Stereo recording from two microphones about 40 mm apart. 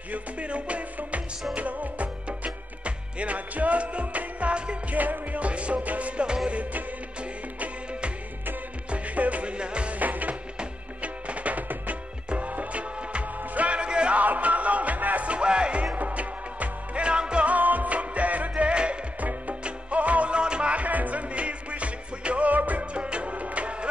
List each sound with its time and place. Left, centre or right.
0.1 s music: right
4.9 s music: right
6.2 s music: centre
6.5 s music: right
8.9 s music: right
9.9 s music: right
14.1 s music: right
15.2 s music: right
17.0 s music: right
17.5 s music: right
18.6 s music: right
20.3 s music: right
22.5 s music: right
22.9 s music: right